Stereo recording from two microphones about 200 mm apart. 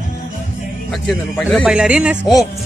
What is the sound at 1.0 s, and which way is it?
Speech, 5° left (ahead or behind).